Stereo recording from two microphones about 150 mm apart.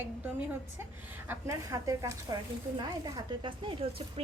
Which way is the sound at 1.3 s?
20° right (ahead or behind).